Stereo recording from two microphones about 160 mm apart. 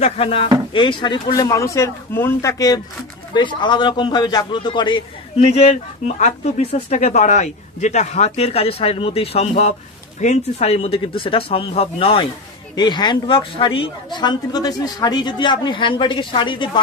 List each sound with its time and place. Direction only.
0.0 s a man's voice: 35° left (ahead or behind)